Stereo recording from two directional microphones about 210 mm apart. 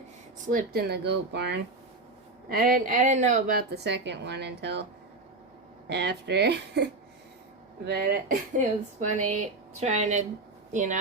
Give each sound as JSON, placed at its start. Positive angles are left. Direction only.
{"t": 0.4, "sound": "a woman's voice", "side_deg": -45}
{"t": 2.5, "sound": "a woman's voice", "side_deg": -40}
{"t": 5.9, "sound": "a woman's voice", "side_deg": -55}
{"t": 7.9, "sound": "a woman's voice", "side_deg": -50}
{"t": 8.5, "sound": "speech", "side_deg": -35}